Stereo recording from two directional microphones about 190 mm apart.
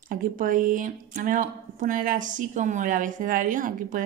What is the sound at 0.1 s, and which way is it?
Speech, 45° right (ahead or behind).